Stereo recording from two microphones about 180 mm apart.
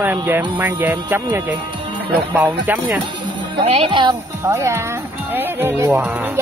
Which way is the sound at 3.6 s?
30° right (ahead or behind).